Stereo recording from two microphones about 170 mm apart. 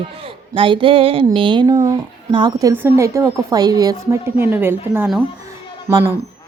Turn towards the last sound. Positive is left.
turn(degrees=-15)  # may be behind; listen again after turning